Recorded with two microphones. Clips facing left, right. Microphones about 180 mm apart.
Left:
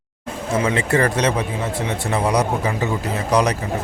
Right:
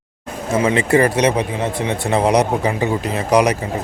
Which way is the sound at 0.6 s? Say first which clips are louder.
Right 5 dB; 15° right (ahead or behind).